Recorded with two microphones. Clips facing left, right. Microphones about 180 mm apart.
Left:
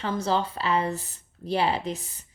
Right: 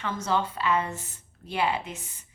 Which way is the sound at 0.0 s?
30° left (ahead or behind).